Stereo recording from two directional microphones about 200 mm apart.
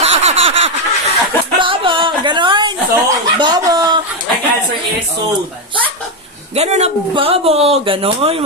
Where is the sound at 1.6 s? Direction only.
25° right (ahead or behind).